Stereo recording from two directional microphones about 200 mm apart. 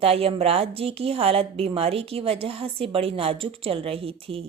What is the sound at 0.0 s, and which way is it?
A woman's voice, 30° right (ahead or behind).